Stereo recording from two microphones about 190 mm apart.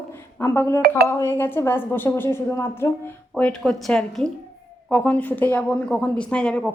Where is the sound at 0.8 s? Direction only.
55° right (ahead or behind).